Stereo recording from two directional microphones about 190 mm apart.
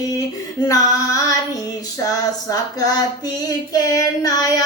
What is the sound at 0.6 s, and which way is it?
Child singing, 15° left (ahead or behind).